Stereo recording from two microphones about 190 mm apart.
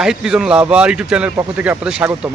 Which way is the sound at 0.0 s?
5° right (ahead or behind).